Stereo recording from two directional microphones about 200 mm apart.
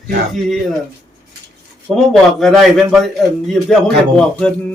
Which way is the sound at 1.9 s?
5° right (ahead or behind).